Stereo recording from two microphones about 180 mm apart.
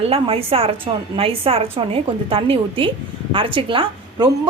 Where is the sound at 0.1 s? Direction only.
30° right (ahead or behind).